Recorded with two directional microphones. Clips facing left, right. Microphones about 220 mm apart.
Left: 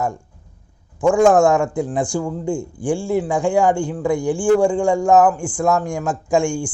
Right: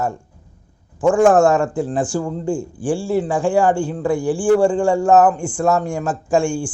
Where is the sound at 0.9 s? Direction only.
5° right (ahead or behind).